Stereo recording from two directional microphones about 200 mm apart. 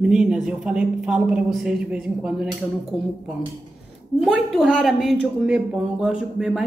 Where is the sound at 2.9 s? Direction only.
30° left (ahead or behind).